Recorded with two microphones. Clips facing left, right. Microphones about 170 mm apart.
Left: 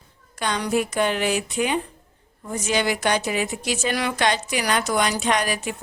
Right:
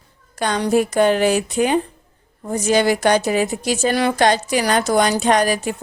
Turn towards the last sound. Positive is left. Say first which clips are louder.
# right 6 dB
turn(degrees=-35)  # may be behind; listen again after turning